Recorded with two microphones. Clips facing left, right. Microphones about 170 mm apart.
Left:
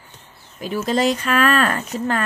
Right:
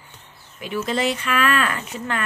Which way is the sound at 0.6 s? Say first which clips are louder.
Left 4 dB; 40° left (ahead or behind).